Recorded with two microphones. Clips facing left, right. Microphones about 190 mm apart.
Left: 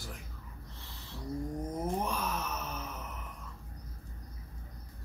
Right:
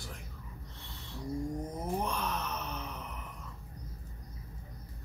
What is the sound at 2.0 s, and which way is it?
Wail, centre (ahead or behind).